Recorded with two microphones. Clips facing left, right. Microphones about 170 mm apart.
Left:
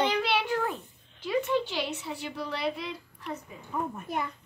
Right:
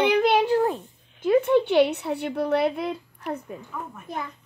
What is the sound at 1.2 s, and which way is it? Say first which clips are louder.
A woman's voice: right 9 dB; 55° right (ahead or behind).